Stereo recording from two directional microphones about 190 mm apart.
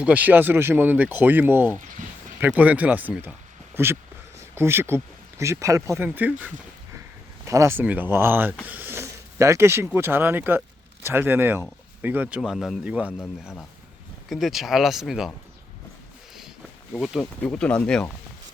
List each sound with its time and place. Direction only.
0.0 s speech: 10° right (ahead or behind)
2.0 s a sound: 45° right (ahead or behind)
2.4 s speech: 10° right (ahead or behind)
4.4 s a sound: 15° right (ahead or behind)
5.4 s speech: 15° right (ahead or behind)
7.4 s speech: 15° right (ahead or behind)
14.3 s speech: centre (ahead or behind)
16.9 s speech: centre (ahead or behind)